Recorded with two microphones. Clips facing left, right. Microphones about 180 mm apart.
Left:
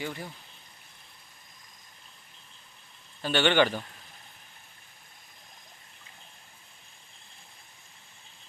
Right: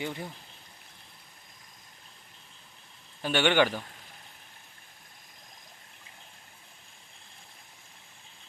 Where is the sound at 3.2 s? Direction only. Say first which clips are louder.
Left 1 dB; 10° right (ahead or behind).